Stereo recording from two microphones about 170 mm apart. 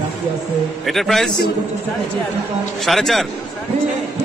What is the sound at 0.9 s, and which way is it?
Speech, centre (ahead or behind).